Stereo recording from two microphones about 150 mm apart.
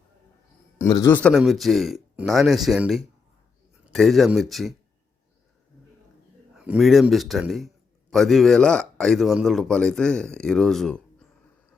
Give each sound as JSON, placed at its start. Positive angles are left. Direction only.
{"t": 0.8, "sound": "a man's voice", "side_deg": 20}
{"t": 1.1, "sound": "speech", "side_deg": 5}
{"t": 6.5, "sound": "speech", "side_deg": -5}